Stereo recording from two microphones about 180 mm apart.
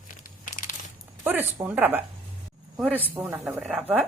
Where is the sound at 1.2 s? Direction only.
10° right (ahead or behind).